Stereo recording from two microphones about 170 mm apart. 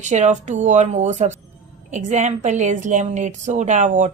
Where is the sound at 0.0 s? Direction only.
45° right (ahead or behind).